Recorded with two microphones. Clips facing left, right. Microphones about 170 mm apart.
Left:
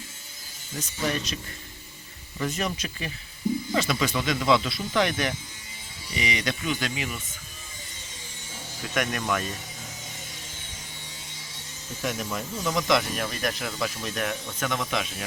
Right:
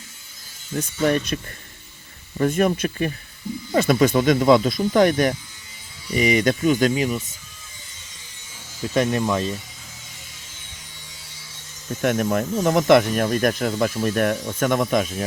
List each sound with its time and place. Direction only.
0.8 s speech: 55° right (ahead or behind)
2.4 s speech: 50° right (ahead or behind)
9.0 s speech: 25° right (ahead or behind)
12.0 s speech: 55° right (ahead or behind)